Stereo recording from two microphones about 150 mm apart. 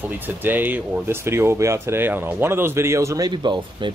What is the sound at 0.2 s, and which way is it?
A man's voice, 15° right (ahead or behind).